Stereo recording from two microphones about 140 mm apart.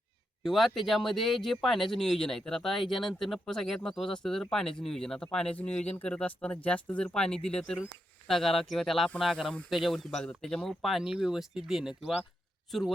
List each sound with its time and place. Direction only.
0.4 s speech: centre (ahead or behind)